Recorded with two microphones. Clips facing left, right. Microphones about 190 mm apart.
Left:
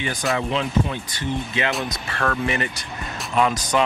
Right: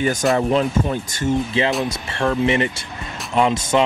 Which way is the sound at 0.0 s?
45° right (ahead or behind).